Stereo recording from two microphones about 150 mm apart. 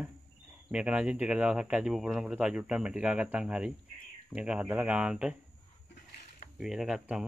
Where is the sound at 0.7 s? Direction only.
5° right (ahead or behind).